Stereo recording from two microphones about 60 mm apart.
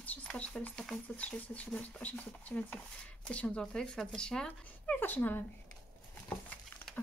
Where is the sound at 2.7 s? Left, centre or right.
Centre.